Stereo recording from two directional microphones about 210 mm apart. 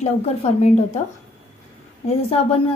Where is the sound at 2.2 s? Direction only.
30° left (ahead or behind).